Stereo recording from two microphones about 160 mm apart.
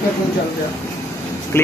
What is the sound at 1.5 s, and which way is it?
Speech, 15° left (ahead or behind).